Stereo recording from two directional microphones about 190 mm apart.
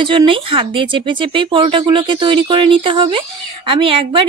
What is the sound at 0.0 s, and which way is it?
Speech, 25° right (ahead or behind).